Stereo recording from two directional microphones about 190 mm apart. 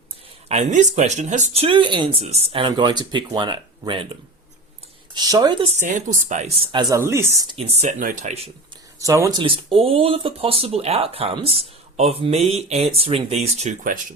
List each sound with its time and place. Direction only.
0.4 s speech: 40° right (ahead or behind)
5.1 s speech: 20° right (ahead or behind)
7.5 s speech: 30° right (ahead or behind)
9.0 s speech: 15° right (ahead or behind)
9.4 s speech: 30° right (ahead or behind)